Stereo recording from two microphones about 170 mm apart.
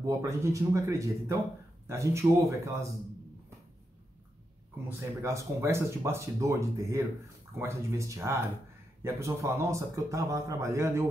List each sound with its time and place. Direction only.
0.0 s speech: 15° right (ahead or behind)
4.8 s speech: 15° right (ahead or behind)